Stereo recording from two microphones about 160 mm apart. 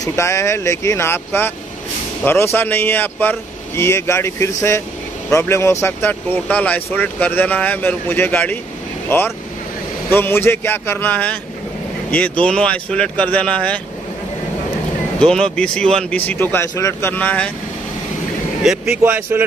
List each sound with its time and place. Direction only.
0.0 s speech: 20° left (ahead or behind)
15.1 s speech: 5° left (ahead or behind)
18.6 s speech: 5° right (ahead or behind)